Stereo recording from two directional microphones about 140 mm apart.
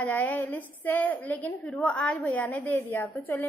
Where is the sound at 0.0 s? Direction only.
10° left (ahead or behind).